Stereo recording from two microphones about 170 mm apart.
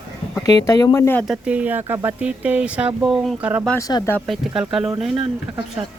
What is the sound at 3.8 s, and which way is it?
Speech, 20° left (ahead or behind).